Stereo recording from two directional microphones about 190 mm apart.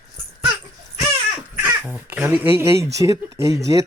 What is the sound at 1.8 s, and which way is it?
Speech, 5° right (ahead or behind).